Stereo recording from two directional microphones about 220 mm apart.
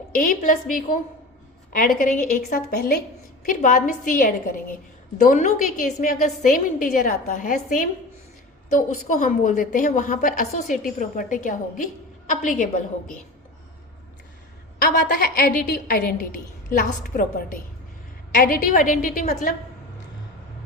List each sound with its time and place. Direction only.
0.1 s a woman's voice: 40° left (ahead or behind)
9.0 s a woman's voice: 35° left (ahead or behind)
15.0 s a woman's voice: 40° left (ahead or behind)